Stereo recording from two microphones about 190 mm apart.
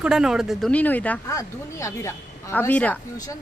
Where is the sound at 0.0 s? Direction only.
5° right (ahead or behind).